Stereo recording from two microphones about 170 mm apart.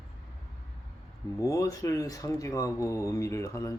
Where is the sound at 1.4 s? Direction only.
20° left (ahead or behind).